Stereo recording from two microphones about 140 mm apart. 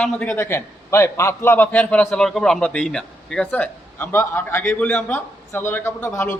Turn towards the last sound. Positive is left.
turn(degrees=15)  # may be behind; listen again after turning